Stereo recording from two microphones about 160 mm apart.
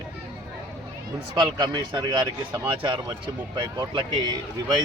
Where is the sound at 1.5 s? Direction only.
25° right (ahead or behind).